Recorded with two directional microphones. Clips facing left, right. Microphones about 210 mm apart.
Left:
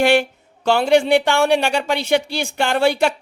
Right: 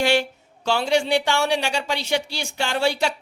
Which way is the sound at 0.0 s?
55° left (ahead or behind).